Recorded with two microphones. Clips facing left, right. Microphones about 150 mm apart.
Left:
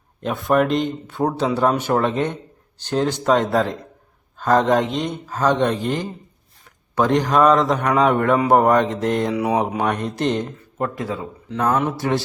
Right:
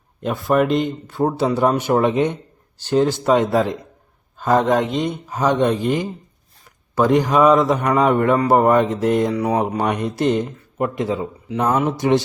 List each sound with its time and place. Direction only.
0.2 s speech: centre (ahead or behind)
9.4 s mantra: 10° left (ahead or behind)
9.8 s speech: 10° right (ahead or behind)